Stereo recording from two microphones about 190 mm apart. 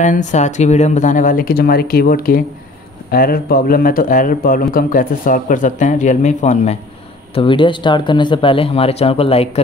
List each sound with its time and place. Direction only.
0.0 s speech: 40° left (ahead or behind)
7.3 s speech: 25° left (ahead or behind)